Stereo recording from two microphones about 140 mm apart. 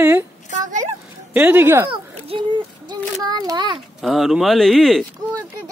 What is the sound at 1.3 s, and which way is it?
Speech, 15° right (ahead or behind).